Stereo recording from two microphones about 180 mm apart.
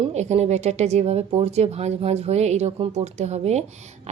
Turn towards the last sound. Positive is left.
turn(degrees=-40)  # may be behind; listen again after turning